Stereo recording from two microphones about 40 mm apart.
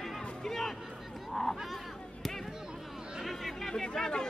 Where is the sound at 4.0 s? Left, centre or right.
Centre.